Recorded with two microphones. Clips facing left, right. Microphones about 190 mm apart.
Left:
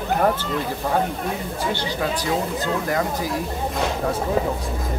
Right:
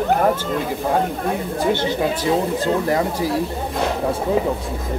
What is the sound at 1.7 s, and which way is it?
Speech, 25° right (ahead or behind).